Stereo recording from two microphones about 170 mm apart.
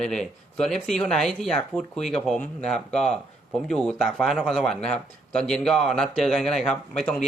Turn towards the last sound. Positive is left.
turn(degrees=5)  # may be behind; listen again after turning